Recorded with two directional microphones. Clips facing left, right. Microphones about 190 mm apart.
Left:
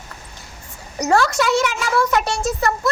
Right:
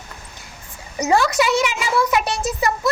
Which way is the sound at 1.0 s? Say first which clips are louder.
Even; 15° right (ahead or behind).